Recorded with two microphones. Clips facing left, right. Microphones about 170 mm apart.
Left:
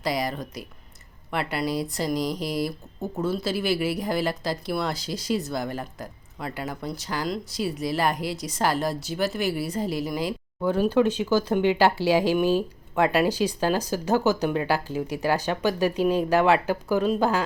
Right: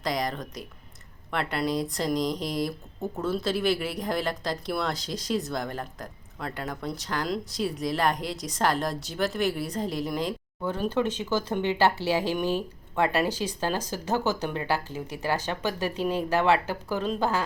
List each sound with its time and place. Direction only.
0.0 s speech: 5° left (ahead or behind)